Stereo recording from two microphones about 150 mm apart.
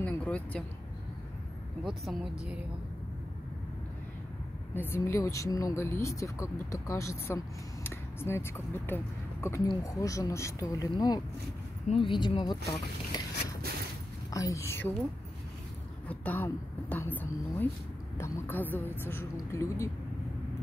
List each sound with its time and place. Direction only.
0.0 s a sound: 10° left (ahead or behind)
1.9 s speech: 5° right (ahead or behind)
4.7 s speech: 15° left (ahead or behind)
14.3 s speech: 20° left (ahead or behind)
16.1 s a woman's voice: 10° left (ahead or behind)